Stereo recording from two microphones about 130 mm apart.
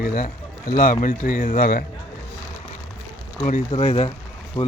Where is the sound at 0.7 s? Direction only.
90° left.